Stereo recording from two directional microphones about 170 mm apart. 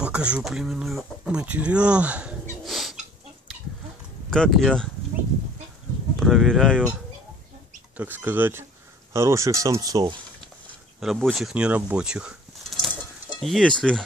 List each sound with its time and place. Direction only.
0.0 s speech: 5° right (ahead or behind)
2.6 s a sound: centre (ahead or behind)
4.3 s speech: centre (ahead or behind)
6.1 s speech: centre (ahead or behind)
8.0 s speech: 10° right (ahead or behind)
11.0 s speech: centre (ahead or behind)